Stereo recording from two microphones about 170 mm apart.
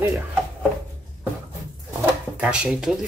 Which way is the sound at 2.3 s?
5° right (ahead or behind).